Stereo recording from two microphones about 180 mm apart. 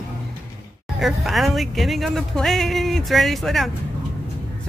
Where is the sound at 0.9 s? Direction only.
Centre (ahead or behind).